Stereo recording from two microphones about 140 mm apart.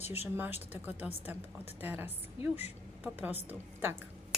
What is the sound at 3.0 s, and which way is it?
Speech, 10° right (ahead or behind).